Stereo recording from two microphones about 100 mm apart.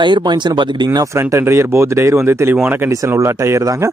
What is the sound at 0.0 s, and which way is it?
Speech, 50° right (ahead or behind).